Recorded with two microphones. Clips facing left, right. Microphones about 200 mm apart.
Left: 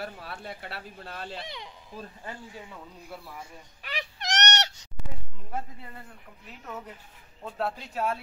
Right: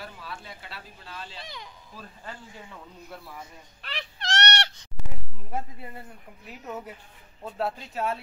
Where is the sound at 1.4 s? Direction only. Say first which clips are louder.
Left 2 dB; 25° left (ahead or behind).